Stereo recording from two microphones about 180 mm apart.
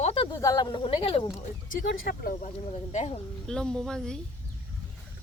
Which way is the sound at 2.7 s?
40° left (ahead or behind).